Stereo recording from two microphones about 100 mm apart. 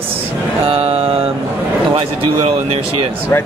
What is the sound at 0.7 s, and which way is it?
Mantra, 75° right (ahead or behind).